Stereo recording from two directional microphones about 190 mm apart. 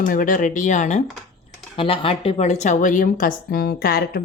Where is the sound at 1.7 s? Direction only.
30° left (ahead or behind).